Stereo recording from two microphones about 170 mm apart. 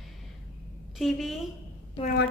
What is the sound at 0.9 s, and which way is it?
Speech, centre (ahead or behind).